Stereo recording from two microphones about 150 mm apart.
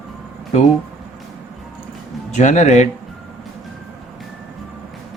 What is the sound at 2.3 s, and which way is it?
Speech, 55° left (ahead or behind).